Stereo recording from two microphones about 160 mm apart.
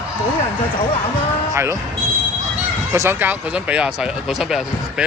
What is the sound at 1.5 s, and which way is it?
Speech, 20° right (ahead or behind).